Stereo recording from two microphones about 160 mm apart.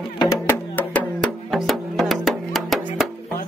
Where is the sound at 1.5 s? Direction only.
Centre (ahead or behind).